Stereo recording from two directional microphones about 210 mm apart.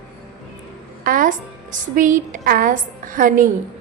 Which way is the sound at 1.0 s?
40° right (ahead or behind).